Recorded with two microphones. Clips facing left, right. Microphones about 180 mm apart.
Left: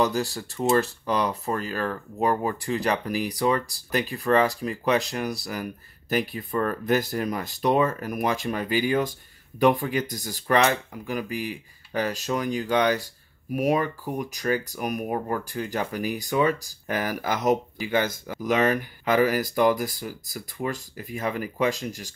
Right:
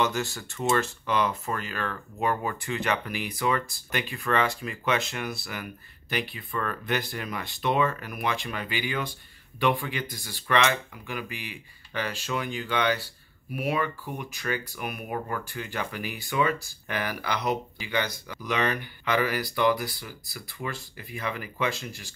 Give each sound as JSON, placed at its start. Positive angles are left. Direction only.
{"t": 0.0, "sound": "speech", "side_deg": 35}